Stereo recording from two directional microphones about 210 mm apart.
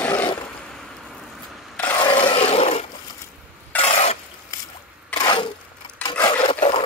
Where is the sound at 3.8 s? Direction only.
30° left (ahead or behind).